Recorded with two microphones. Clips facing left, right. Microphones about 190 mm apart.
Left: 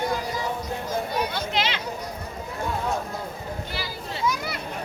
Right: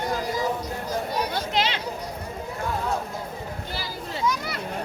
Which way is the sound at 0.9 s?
35° right (ahead or behind).